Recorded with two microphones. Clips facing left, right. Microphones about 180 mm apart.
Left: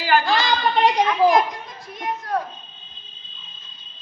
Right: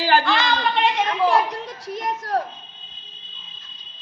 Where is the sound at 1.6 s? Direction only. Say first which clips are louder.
Right 7 dB; 90° right.